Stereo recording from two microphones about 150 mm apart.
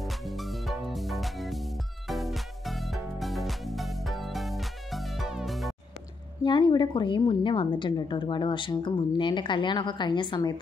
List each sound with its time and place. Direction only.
0.0 s music: centre (ahead or behind)
6.4 s a woman's voice: 30° left (ahead or behind)